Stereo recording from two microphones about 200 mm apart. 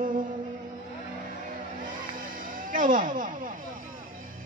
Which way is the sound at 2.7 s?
40° right (ahead or behind).